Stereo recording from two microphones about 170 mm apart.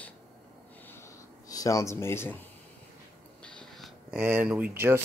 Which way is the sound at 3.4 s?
5° left (ahead or behind).